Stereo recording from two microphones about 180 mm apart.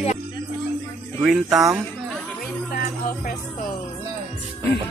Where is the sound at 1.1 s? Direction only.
5° right (ahead or behind).